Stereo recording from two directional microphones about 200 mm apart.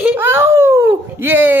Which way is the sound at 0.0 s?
10° right (ahead or behind).